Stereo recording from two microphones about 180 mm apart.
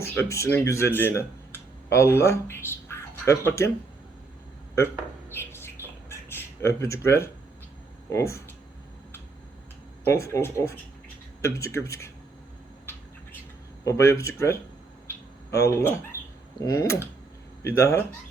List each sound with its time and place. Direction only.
0.1 s speech: 15° left (ahead or behind)
5.3 s a sound: 15° left (ahead or behind)
8.1 s speech: 15° left (ahead or behind)
10.0 s speech: 15° left (ahead or behind)
13.8 s speech: 15° left (ahead or behind)